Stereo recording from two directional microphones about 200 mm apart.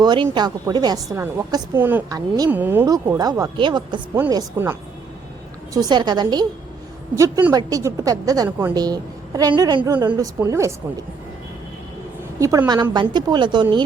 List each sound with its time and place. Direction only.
0.0 s a woman's voice: 20° right (ahead or behind)
12.4 s a woman's voice: 15° right (ahead or behind)